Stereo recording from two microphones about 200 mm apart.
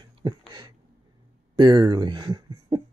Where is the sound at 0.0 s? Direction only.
20° right (ahead or behind).